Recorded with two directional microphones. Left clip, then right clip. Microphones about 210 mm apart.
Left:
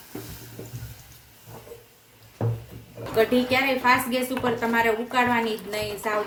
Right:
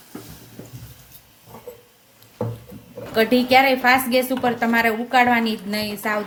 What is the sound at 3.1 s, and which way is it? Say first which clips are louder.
A woman's voice: right 6 dB; 50° right (ahead or behind).